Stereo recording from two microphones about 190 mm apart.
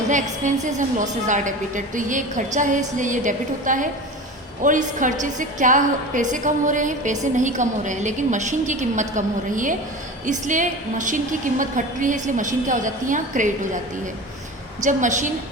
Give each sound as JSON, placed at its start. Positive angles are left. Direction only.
{"t": 0.1, "sound": "a woman's voice", "side_deg": -40}
{"t": 14.8, "sound": "a woman's voice", "side_deg": -40}